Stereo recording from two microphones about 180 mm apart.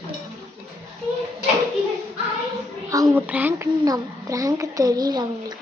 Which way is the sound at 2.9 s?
20° right (ahead or behind).